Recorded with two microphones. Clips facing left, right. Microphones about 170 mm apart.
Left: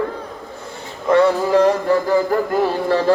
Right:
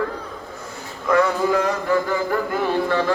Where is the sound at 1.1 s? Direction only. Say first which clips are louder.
Left 4 dB; 35° left (ahead or behind).